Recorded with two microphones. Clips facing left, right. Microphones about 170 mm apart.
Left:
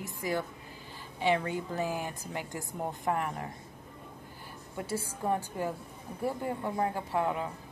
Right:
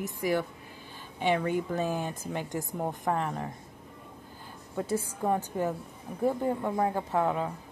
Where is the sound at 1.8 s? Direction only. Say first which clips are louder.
Right 3 dB; 20° right (ahead or behind).